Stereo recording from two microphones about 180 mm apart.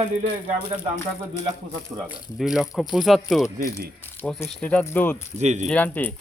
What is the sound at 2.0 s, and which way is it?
Speech, 5° right (ahead or behind).